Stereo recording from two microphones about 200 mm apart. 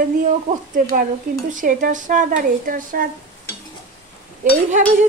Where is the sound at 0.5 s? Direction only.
35° right (ahead or behind).